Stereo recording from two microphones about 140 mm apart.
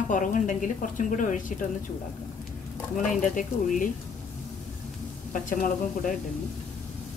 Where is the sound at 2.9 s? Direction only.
65° left (ahead or behind).